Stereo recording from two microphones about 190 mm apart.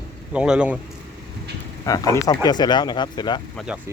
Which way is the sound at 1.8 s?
20° left (ahead or behind).